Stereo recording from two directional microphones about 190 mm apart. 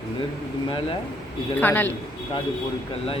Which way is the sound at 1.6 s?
10° left (ahead or behind).